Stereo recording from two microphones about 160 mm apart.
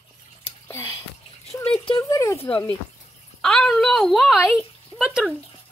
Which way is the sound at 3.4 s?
Centre (ahead or behind).